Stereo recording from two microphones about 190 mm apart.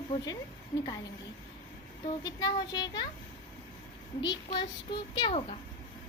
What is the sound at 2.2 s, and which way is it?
Speech, 20° left (ahead or behind).